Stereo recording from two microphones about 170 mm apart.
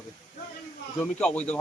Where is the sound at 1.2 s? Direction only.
5° left (ahead or behind).